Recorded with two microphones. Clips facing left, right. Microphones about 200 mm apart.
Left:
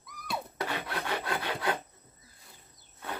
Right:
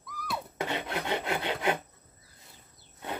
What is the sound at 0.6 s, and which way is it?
Filing, 20° right (ahead or behind).